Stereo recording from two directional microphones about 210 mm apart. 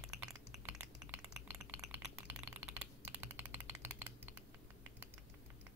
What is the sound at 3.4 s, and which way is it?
Engine, 10° right (ahead or behind).